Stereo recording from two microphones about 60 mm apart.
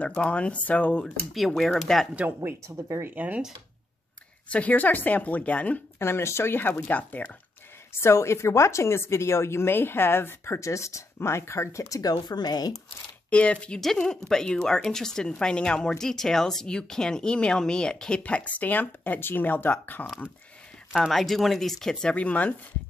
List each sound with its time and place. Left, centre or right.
0.0 s speech: left
1.0 s speech: centre
2.1 s speech: right
2.7 s speech: right
3.2 s speech: right
4.5 s speech: left
5.9 s a woman's voice: left
6.9 s speech: left
7.9 s a woman's voice: left
10.6 s speech: left
13.3 s speech: centre
20.9 s speech: centre
22.1 s speech: left